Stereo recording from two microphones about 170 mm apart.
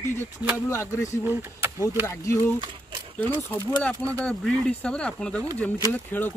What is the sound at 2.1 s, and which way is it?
Speech, 15° left (ahead or behind).